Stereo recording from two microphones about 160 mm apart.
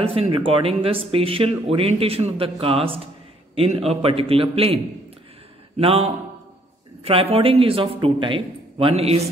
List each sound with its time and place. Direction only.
0.0 s speech: 35° right (ahead or behind)
5.8 s speech: 40° right (ahead or behind)